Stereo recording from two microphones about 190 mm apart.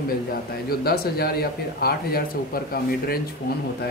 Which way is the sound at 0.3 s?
55° left (ahead or behind).